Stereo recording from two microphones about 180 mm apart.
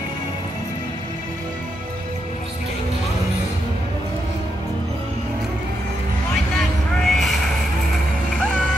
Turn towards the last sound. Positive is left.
turn(degrees=0)  # may be behind; listen again after turning